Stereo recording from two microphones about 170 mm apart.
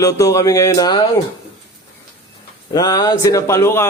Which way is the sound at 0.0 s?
20° left (ahead or behind).